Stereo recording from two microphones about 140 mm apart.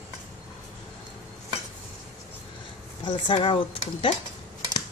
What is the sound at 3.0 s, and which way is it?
Speech, 40° left (ahead or behind).